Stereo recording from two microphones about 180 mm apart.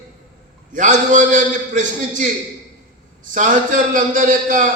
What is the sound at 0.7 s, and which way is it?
A man's voice, 45° right (ahead or behind).